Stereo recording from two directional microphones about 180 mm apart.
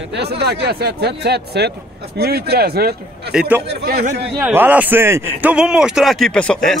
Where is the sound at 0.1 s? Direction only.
65° right (ahead or behind).